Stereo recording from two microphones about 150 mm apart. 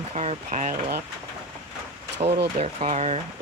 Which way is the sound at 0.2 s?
50° right (ahead or behind).